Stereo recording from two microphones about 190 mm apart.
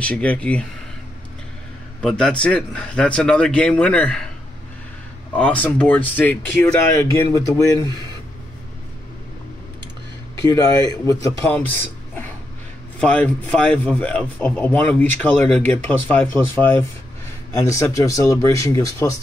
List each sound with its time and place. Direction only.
0.0 s speech: 5° left (ahead or behind)
2.0 s a man's voice: 5° left (ahead or behind)
5.3 s speech: 5° left (ahead or behind)
10.9 s speech: 15° left (ahead or behind)
13.0 s speech: 5° left (ahead or behind)